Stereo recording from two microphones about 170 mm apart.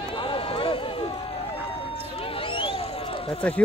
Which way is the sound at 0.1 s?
30° left (ahead or behind).